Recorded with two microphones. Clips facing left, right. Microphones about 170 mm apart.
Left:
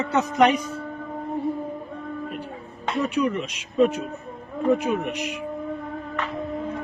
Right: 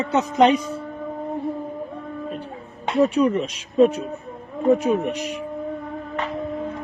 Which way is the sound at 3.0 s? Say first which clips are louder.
Right 6 dB; 35° right (ahead or behind).